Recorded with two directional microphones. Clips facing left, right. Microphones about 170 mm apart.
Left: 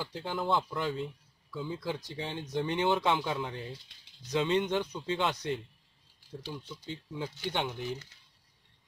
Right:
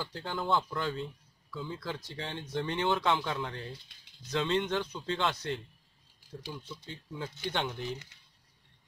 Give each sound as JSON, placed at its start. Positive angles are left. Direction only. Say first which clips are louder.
{"t": 0.0, "sound": "speech", "louder": "left 2 dB", "side_deg": 15}
{"t": 6.9, "sound": "speech", "louder": "left 3 dB", "side_deg": 15}